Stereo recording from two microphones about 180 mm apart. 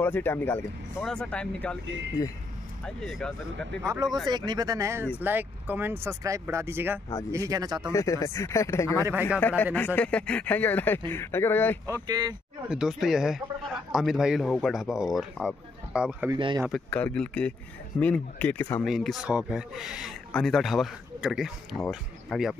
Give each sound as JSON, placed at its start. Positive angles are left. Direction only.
{"t": 0.0, "sound": "speech", "side_deg": 10}
{"t": 2.8, "sound": "speech", "side_deg": 0}
{"t": 3.8, "sound": "speech", "side_deg": -20}
{"t": 7.9, "sound": "speech", "side_deg": 15}
{"t": 11.8, "sound": "speech", "side_deg": -20}
{"t": 12.6, "sound": "speech", "side_deg": -5}
{"t": 16.3, "sound": "speech", "side_deg": -25}
{"t": 16.9, "sound": "speech", "side_deg": 5}
{"t": 18.9, "sound": "speech", "side_deg": 0}